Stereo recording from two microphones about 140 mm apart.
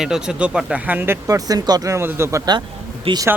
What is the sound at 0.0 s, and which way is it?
Speech, 5° right (ahead or behind).